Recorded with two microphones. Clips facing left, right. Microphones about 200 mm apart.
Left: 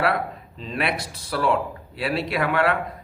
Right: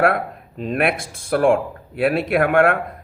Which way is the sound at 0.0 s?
55° right (ahead or behind).